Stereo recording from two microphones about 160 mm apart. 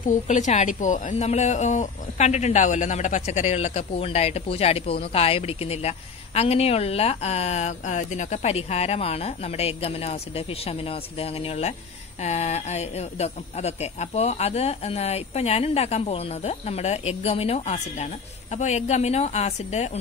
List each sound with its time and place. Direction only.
0.0 s a woman's voice: 50° left (ahead or behind)